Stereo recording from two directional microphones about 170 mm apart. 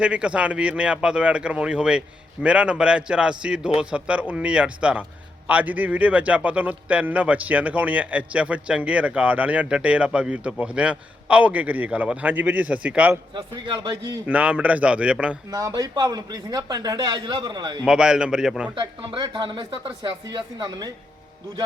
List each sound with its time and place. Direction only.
0.0 s a man's voice: 5° right (ahead or behind)
13.3 s speech: 25° right (ahead or behind)
14.3 s a man's voice: 10° right (ahead or behind)
15.4 s speech: 20° right (ahead or behind)
17.8 s a man's voice: 5° right (ahead or behind)
18.7 s speech: 30° right (ahead or behind)